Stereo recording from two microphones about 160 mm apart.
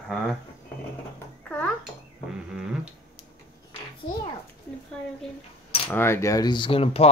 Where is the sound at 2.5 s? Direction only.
5° right (ahead or behind).